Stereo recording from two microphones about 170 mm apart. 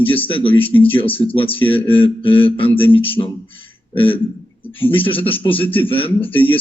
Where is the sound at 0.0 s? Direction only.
30° left (ahead or behind).